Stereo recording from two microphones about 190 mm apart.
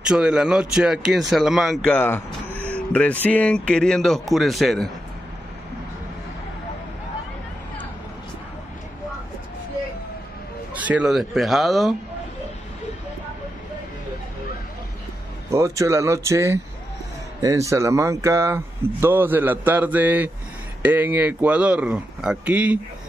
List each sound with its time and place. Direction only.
0.1 s speech: 5° right (ahead or behind)
2.0 s a sound: 10° left (ahead or behind)
3.3 s speech: 5° left (ahead or behind)
10.7 s speech: 10° right (ahead or behind)
15.5 s speech: 15° right (ahead or behind)